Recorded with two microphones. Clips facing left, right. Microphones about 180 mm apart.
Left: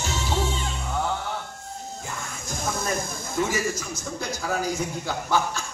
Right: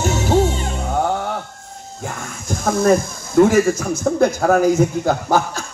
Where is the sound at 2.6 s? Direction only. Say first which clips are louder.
Right 13 dB; 55° right (ahead or behind).